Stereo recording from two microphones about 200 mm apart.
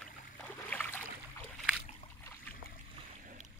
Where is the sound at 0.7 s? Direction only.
10° left (ahead or behind).